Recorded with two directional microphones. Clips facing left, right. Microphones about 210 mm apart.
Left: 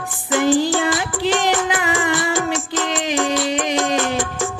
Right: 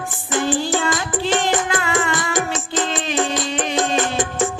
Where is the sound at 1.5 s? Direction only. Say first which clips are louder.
Even; 20° right (ahead or behind).